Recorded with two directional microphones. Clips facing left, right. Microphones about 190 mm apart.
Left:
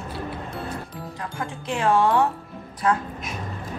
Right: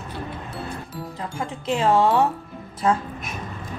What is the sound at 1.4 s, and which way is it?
Speech, 20° right (ahead or behind).